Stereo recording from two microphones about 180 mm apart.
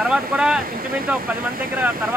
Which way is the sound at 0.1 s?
5° right (ahead or behind).